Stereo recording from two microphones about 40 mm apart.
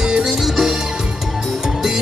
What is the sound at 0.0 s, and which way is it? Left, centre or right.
Music, centre.